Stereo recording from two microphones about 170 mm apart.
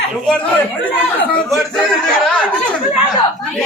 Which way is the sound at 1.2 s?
5° left (ahead or behind).